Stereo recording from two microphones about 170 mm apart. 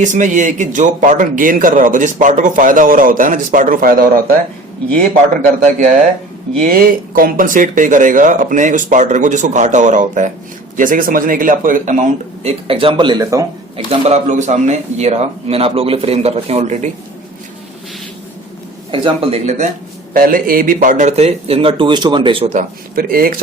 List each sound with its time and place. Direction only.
0.0 s speech: 45° right (ahead or behind)
6.6 s speech: 55° right (ahead or behind); by 13.4 s 25° right (ahead or behind)
13.7 s speech: 35° right (ahead or behind)
18.9 s speech: 30° right (ahead or behind)
19.5 s speech: 45° right (ahead or behind)
20.1 s speech: 55° right (ahead or behind); by 22.4 s 30° right (ahead or behind)
22.5 s speech: 55° right (ahead or behind)